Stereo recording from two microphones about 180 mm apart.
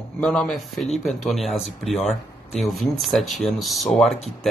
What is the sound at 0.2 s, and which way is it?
Speech, centre (ahead or behind).